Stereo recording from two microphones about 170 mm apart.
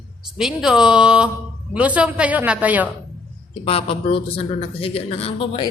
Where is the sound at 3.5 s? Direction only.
35° left (ahead or behind).